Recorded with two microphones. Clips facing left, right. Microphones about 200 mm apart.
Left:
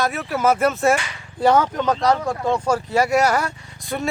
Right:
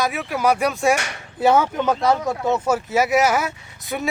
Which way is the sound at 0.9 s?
70° right (ahead or behind).